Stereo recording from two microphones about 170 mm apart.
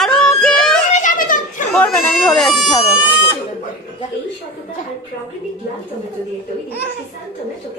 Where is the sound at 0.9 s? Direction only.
50° left (ahead or behind).